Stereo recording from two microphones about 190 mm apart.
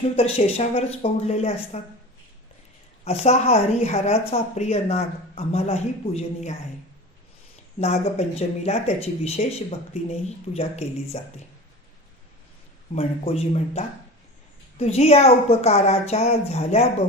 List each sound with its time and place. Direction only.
0.2 s speech: 30° left (ahead or behind)
3.0 s speech: 35° left (ahead or behind)
8.4 s speech: 35° left (ahead or behind)
12.9 s speech: 35° left (ahead or behind)